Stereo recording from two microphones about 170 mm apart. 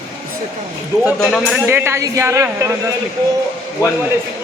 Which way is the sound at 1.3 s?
Centre (ahead or behind).